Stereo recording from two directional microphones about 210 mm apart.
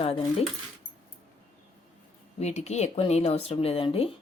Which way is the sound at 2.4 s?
30° left (ahead or behind).